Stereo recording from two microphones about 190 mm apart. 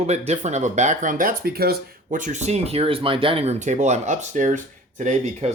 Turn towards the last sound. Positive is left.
turn(degrees=-35)  # may be behind; listen again after turning